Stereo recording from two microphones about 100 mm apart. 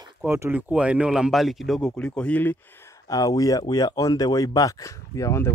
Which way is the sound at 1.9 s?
10° left (ahead or behind).